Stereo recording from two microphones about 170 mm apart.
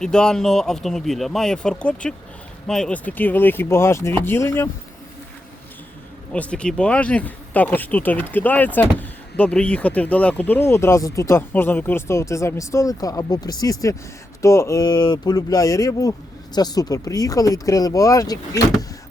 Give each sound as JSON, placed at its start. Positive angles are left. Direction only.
{"t": 0.0, "sound": "speech", "side_deg": 5}
{"t": 6.3, "sound": "speech", "side_deg": 5}